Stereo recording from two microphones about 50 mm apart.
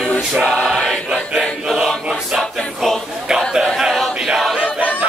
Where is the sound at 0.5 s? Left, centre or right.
Centre.